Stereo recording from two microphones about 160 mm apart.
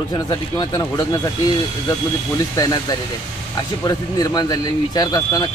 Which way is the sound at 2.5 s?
25° left (ahead or behind).